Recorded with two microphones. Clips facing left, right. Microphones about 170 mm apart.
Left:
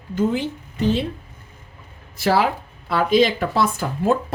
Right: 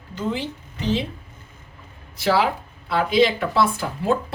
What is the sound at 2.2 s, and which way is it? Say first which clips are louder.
Speech: left 1 dB; 50° left (ahead or behind).